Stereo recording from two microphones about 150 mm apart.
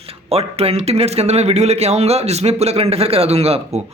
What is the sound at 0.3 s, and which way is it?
A man's voice, 40° right (ahead or behind).